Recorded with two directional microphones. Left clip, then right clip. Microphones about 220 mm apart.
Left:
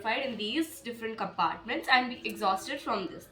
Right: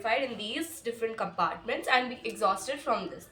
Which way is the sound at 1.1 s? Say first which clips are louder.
Left 4 dB; 40° right (ahead or behind).